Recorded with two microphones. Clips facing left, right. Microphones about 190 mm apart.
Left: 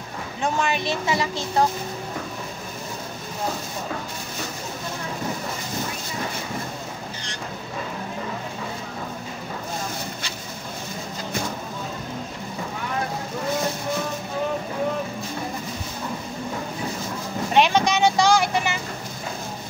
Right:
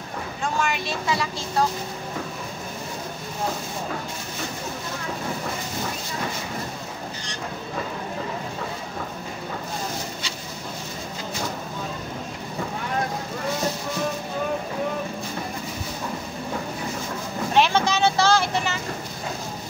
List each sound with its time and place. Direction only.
0.4 s speech: 20° left (ahead or behind)
17.6 s vehicle: 15° left (ahead or behind)